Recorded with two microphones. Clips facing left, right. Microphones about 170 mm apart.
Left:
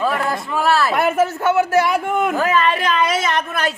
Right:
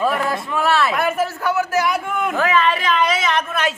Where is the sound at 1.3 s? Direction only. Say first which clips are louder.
Left 4 dB; 25° left (ahead or behind).